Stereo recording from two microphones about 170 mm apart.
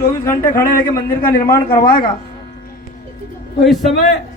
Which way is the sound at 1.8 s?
55° left (ahead or behind).